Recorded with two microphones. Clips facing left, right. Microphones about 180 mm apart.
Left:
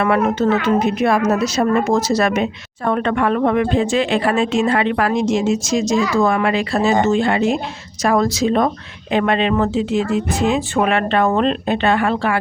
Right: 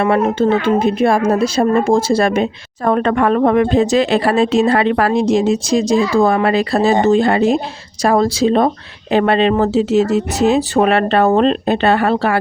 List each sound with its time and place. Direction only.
0.0 s a woman's voice: 30° right (ahead or behind)
2.9 s speech: 40° right (ahead or behind)